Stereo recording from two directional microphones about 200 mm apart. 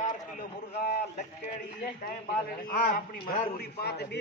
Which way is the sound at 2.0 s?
45° left (ahead or behind).